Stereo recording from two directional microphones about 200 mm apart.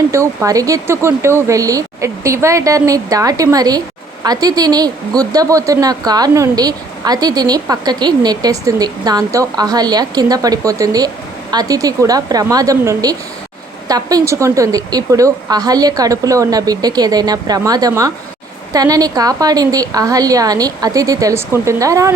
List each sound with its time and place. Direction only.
0.1 s a woman's voice: 15° right (ahead or behind)